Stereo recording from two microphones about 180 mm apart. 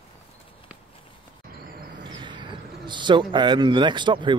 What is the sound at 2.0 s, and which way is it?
Speech, 25° right (ahead or behind).